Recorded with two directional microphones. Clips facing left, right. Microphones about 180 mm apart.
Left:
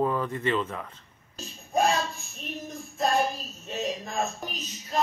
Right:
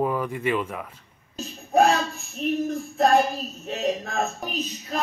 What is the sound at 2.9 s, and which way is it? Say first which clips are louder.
Child singing: right 6 dB; 70° right (ahead or behind).